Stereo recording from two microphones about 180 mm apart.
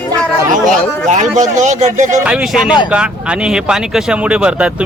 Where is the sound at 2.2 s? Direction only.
5° right (ahead or behind).